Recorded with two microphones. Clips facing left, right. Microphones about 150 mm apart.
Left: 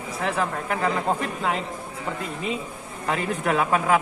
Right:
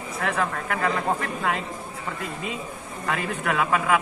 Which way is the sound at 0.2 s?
20° left (ahead or behind).